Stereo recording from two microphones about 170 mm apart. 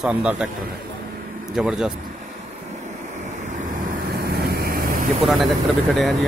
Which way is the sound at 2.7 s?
45° right (ahead or behind).